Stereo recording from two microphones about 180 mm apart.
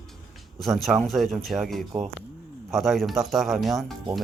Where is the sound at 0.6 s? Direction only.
Centre (ahead or behind).